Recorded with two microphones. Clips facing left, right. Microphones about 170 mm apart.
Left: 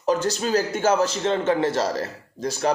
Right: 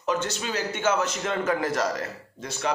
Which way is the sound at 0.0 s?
35° left (ahead or behind).